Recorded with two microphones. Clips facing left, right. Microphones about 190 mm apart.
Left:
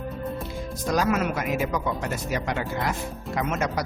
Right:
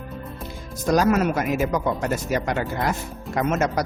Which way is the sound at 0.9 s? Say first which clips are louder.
Right 5 dB; 45° right (ahead or behind).